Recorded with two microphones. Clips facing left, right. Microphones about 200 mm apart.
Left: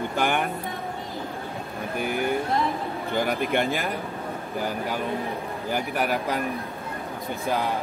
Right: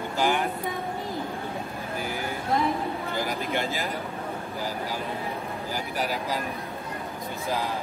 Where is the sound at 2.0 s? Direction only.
60° left (ahead or behind).